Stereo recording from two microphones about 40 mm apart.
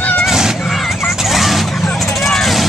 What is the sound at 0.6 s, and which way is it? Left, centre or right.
Vehicle, centre.